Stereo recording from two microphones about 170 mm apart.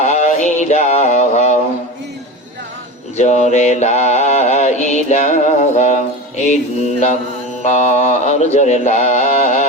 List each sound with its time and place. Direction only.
0.0 s music: 40° left (ahead or behind)
3.2 s mantra: 45° left (ahead or behind)